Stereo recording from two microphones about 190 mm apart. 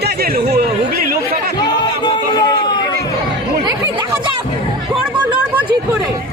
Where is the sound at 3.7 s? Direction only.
20° right (ahead or behind).